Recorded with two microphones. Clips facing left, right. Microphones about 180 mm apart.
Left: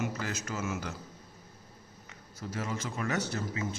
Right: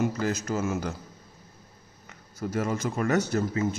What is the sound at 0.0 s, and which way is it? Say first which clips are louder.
Speech: right 8 dB; 35° right (ahead or behind).